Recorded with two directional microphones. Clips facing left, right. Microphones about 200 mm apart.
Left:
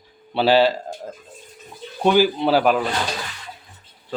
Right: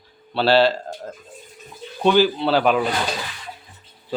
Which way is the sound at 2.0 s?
10° left (ahead or behind).